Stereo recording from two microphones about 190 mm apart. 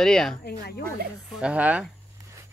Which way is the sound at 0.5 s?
55° left (ahead or behind).